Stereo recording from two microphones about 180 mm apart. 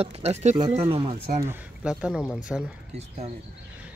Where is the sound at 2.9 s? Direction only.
35° right (ahead or behind).